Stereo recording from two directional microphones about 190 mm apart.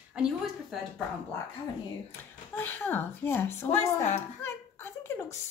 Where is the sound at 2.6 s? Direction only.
10° left (ahead or behind).